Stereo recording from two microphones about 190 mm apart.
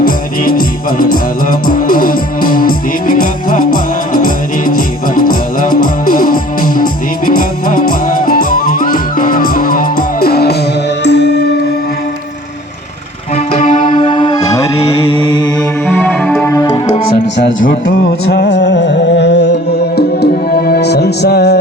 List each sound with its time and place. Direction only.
0.0 s music: 50° left (ahead or behind); by 11.4 s 65° left (ahead or behind)
13.6 s music: 45° left (ahead or behind)
13.8 s music: 25° left (ahead or behind)
18.3 s music: 60° left (ahead or behind)